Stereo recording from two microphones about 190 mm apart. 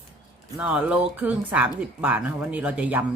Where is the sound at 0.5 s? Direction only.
5° right (ahead or behind).